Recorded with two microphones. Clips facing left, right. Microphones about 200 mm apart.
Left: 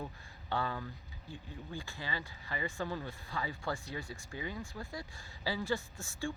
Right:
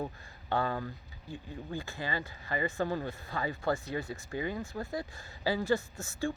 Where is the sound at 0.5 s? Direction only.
50° right (ahead or behind).